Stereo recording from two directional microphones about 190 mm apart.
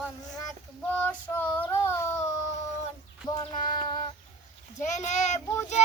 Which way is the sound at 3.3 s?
25° left (ahead or behind).